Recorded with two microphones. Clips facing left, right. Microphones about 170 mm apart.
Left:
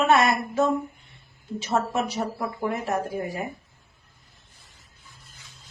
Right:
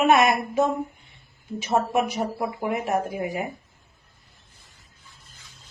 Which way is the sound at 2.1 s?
10° right (ahead or behind).